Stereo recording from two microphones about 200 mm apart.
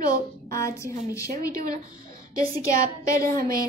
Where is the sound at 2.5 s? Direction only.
15° left (ahead or behind).